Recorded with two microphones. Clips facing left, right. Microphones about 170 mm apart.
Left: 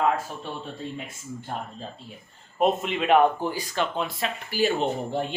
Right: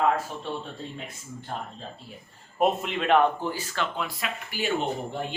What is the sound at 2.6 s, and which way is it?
Speech, 5° left (ahead or behind).